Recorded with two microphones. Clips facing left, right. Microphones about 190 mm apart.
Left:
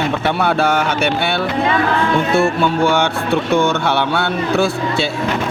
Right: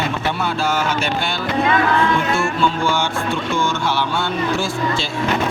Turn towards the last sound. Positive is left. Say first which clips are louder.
# left 4 dB
turn(degrees=65)  # may be behind; listen again after turning